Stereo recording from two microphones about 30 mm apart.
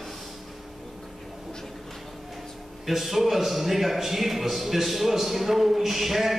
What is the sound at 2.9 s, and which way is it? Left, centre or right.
A man's voice, centre.